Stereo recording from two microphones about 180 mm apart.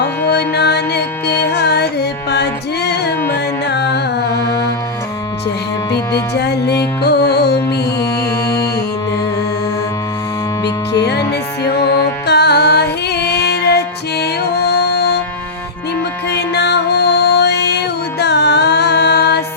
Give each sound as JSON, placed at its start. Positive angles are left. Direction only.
{"t": 0.3, "sound": "music", "side_deg": 65}
{"t": 6.3, "sound": "music", "side_deg": 65}
{"t": 11.0, "sound": "music", "side_deg": 65}
{"t": 12.3, "sound": "music", "side_deg": 65}
{"t": 16.3, "sound": "music", "side_deg": 70}